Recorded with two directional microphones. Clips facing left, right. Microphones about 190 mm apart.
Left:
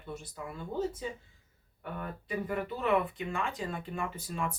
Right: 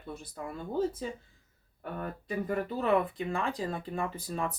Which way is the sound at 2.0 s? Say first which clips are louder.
Right 2 dB; 40° right (ahead or behind).